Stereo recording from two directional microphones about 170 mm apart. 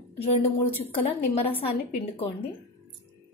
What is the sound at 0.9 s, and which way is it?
A woman's voice, 35° left (ahead or behind).